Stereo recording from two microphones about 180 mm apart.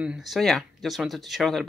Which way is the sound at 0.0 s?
5° right (ahead or behind).